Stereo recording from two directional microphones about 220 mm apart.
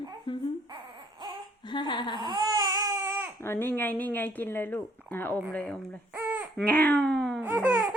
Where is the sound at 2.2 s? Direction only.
20° right (ahead or behind).